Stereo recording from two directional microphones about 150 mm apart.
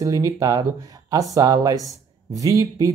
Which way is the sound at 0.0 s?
25° right (ahead or behind).